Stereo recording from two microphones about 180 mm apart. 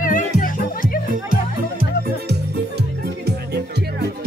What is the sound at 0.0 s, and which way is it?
Music, 50° left (ahead or behind).